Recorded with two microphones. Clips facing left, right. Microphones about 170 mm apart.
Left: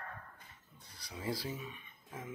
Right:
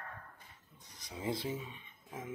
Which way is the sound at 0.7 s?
20° right (ahead or behind).